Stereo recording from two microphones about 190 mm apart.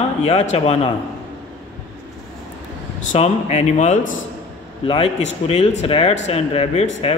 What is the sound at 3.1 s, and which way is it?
Speech, 35° left (ahead or behind).